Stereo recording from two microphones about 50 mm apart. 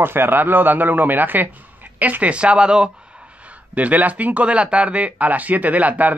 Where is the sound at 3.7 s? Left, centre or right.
Right.